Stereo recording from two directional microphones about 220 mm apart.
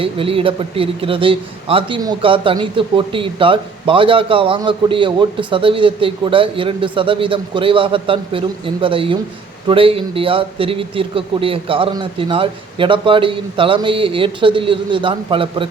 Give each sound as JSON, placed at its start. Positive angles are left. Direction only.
{"t": 0.0, "sound": "a man's voice", "side_deg": -25}